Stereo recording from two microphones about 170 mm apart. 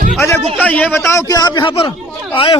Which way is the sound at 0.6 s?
10° left (ahead or behind).